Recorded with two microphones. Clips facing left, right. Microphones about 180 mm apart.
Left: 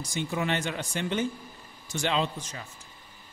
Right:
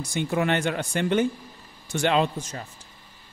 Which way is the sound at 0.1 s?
60° right (ahead or behind).